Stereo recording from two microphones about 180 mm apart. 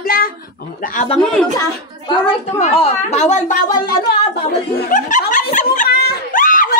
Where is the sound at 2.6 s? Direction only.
40° left (ahead or behind).